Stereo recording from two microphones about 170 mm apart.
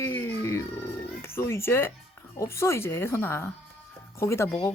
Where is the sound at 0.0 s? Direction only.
15° left (ahead or behind).